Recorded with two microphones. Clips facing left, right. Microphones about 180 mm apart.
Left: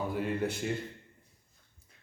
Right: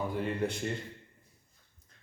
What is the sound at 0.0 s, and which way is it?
Speech, 5° left (ahead or behind).